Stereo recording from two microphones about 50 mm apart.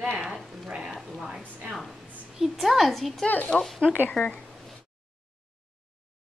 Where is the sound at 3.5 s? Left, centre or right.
Centre.